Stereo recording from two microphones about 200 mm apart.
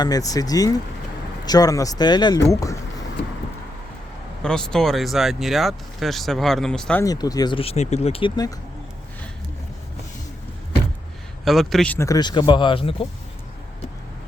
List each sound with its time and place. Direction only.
0.0 s speech: 20° left (ahead or behind)
4.4 s speech: 5° left (ahead or behind)
7.0 s speech: 20° left (ahead or behind)
11.4 s speech: centre (ahead or behind); by 13.1 s 25° left (ahead or behind)